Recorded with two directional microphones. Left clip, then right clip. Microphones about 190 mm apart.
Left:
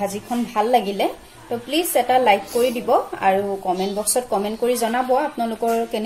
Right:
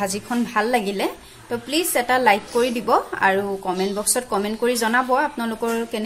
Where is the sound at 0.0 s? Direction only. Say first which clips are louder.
Even; 35° right (ahead or behind).